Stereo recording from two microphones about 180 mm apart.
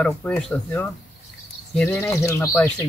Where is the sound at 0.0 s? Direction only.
5° left (ahead or behind).